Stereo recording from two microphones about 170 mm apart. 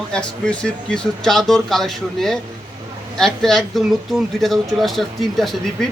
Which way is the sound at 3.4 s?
Centre (ahead or behind).